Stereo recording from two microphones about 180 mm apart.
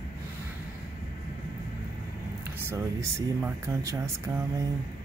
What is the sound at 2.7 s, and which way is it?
Speech, 15° right (ahead or behind).